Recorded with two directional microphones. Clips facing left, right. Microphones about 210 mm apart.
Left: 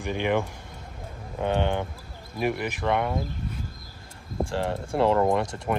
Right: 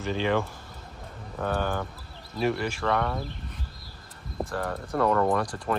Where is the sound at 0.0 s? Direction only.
15° left (ahead or behind).